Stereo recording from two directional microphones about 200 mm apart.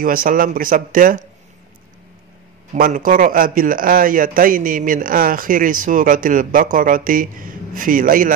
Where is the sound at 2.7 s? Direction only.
40° right (ahead or behind).